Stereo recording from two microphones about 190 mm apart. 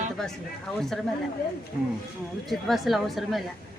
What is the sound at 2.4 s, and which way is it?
Speech, centre (ahead or behind).